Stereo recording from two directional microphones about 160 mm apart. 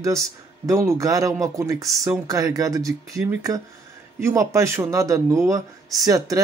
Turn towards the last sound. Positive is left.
turn(degrees=-20)  # may be behind; listen again after turning